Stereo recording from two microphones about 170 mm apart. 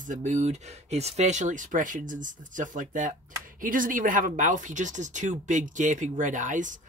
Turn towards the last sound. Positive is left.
turn(degrees=-50)  # may be behind; listen again after turning